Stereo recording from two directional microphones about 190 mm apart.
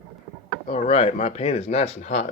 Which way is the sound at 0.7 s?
35° left (ahead or behind).